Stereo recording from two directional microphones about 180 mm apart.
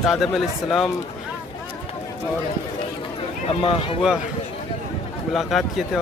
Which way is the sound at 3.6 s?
30° left (ahead or behind).